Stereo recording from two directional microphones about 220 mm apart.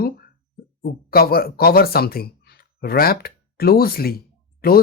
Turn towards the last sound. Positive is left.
turn(degrees=45)  # may be behind; listen again after turning